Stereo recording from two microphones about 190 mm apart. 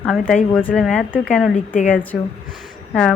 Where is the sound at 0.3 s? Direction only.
5° left (ahead or behind).